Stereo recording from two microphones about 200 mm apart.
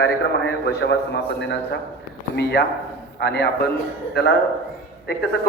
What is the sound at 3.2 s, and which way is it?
Speech, 55° left (ahead or behind).